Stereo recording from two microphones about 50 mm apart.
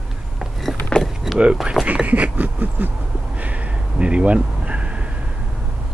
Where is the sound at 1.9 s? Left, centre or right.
Right.